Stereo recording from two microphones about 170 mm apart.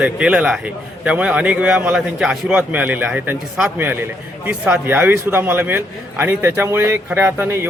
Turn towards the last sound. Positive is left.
turn(degrees=-15)  # may be behind; listen again after turning